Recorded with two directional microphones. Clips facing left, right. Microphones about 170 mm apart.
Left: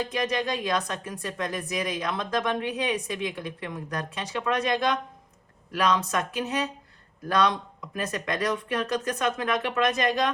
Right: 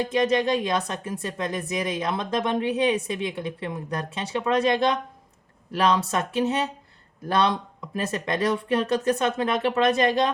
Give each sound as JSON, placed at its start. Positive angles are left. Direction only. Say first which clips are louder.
{"t": 0.1, "sound": "speech", "louder": "right 6 dB", "side_deg": -25}